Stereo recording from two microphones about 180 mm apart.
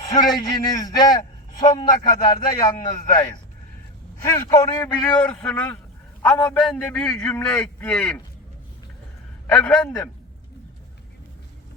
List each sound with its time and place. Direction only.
0.0 s a man's voice: 20° left (ahead or behind)
4.3 s a man's voice: 15° left (ahead or behind)
5.1 s a man's voice: 5° left (ahead or behind)
9.5 s a man's voice: 5° left (ahead or behind)